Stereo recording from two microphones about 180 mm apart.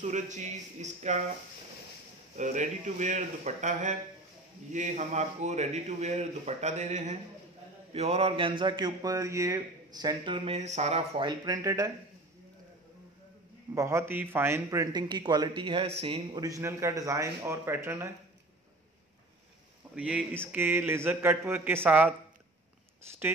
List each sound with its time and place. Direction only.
0.0 s a man's voice: 40° right (ahead or behind)
2.3 s a man's voice: 45° right (ahead or behind); by 11.9 s 20° right (ahead or behind)
13.7 s a man's voice: 15° right (ahead or behind); by 16.4 s 30° right (ahead or behind)
16.4 s speech: 15° right (ahead or behind)
20.0 s speech: 5° right (ahead or behind)